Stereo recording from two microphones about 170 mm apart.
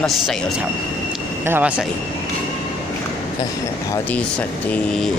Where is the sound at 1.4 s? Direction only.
10° right (ahead or behind).